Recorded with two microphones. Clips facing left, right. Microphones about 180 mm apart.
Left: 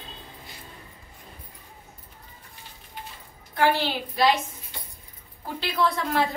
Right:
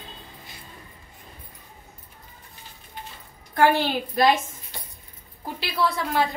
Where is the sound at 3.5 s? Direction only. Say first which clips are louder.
Right 3 dB; 45° right (ahead or behind).